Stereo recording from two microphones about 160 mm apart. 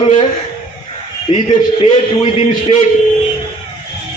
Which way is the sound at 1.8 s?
35° left (ahead or behind).